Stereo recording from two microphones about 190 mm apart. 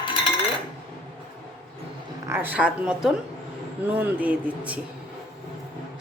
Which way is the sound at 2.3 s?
10° right (ahead or behind).